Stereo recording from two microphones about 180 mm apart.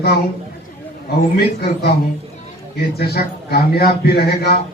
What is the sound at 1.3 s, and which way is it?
Speech, 60° left (ahead or behind).